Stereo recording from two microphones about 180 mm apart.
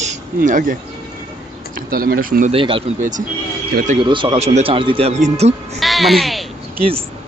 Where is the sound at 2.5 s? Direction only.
30° right (ahead or behind).